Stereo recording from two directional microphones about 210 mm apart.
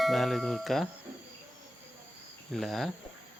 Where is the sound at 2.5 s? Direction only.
Centre (ahead or behind).